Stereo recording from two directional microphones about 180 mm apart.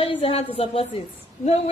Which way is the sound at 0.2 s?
30° left (ahead or behind).